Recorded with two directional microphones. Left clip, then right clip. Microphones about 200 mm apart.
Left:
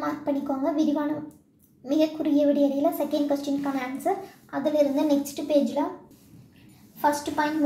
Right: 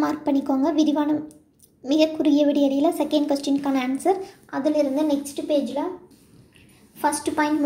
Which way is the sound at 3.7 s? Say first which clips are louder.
Right 5 dB; 25° right (ahead or behind).